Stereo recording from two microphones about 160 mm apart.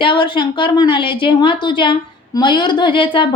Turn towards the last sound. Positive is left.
turn(degrees=30)  # may be behind; listen again after turning